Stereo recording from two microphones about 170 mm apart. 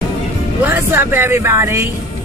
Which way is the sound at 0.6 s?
15° right (ahead or behind).